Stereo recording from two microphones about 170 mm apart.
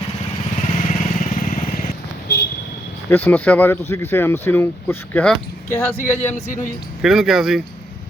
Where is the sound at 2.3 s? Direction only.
75° left (ahead or behind).